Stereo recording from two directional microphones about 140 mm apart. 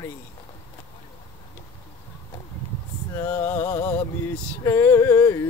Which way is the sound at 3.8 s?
10° left (ahead or behind).